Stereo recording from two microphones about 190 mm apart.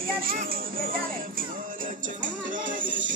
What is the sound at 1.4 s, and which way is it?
Music, 45° right (ahead or behind).